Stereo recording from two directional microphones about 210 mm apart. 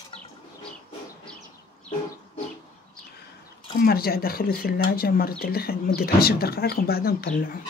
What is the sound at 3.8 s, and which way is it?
Speech, 45° left (ahead or behind).